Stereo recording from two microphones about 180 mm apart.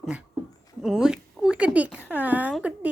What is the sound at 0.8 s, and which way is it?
A woman's voice, centre (ahead or behind).